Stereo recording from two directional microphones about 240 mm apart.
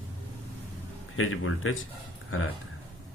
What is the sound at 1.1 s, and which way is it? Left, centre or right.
Speech, left.